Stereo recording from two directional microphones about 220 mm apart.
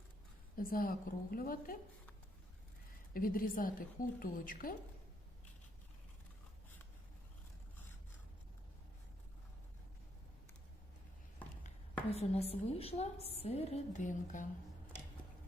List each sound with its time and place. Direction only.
0.5 s a woman's voice: 40° left (ahead or behind)
3.1 s a woman's voice: 40° left (ahead or behind)
12.1 s a woman's voice: 30° left (ahead or behind)